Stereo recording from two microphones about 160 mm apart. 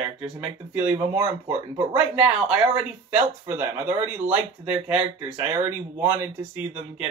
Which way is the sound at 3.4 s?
15° right (ahead or behind).